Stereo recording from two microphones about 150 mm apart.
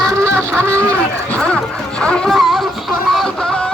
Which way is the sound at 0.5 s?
15° right (ahead or behind).